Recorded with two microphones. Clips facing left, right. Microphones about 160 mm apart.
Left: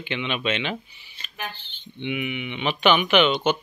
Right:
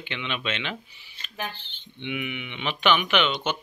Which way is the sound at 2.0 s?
10° left (ahead or behind).